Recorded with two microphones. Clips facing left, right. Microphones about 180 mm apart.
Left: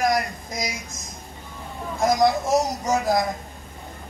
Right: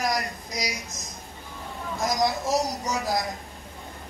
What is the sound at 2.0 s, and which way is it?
A man's voice, 55° left (ahead or behind).